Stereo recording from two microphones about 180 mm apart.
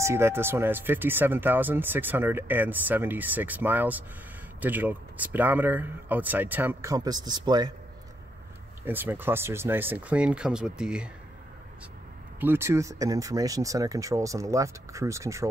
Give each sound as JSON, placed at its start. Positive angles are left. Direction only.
{"t": 0.0, "sound": "speech", "side_deg": -15}
{"t": 8.8, "sound": "speech", "side_deg": -10}
{"t": 12.4, "sound": "speech", "side_deg": -10}